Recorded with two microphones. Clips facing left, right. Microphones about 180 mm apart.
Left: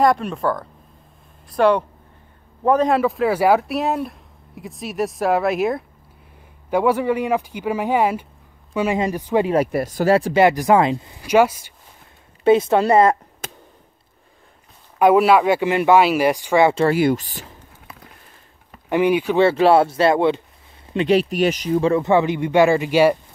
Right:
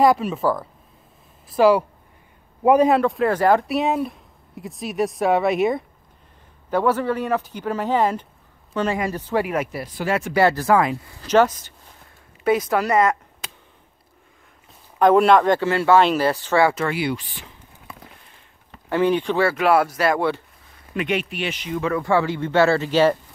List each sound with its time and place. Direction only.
0.0 s a man's voice: 5° right (ahead or behind)
2.9 s speech: centre (ahead or behind)
6.7 s speech: 10° left (ahead or behind)
9.7 s speech: 45° left (ahead or behind)
10.3 s speech: 15° left (ahead or behind)
12.4 s speech: 25° left (ahead or behind)
13.4 s a sound: 45° left (ahead or behind)
15.0 s speech: 5° left (ahead or behind)
16.8 s speech: 45° left (ahead or behind)
18.9 s speech: 15° left (ahead or behind)
19.3 s speech: 25° left (ahead or behind)